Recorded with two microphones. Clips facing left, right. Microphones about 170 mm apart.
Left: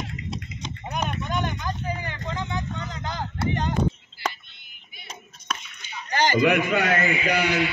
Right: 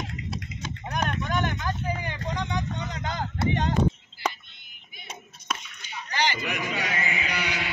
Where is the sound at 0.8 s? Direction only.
10° left (ahead or behind).